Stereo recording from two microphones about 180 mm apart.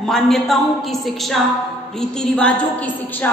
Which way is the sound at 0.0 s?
Centre (ahead or behind).